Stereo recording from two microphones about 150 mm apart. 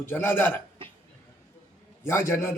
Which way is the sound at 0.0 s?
15° left (ahead or behind).